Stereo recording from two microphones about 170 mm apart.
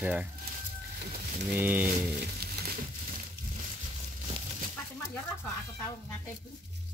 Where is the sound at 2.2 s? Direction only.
70° right (ahead or behind).